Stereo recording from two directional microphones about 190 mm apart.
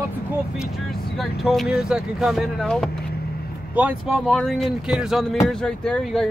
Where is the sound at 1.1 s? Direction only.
Centre (ahead or behind).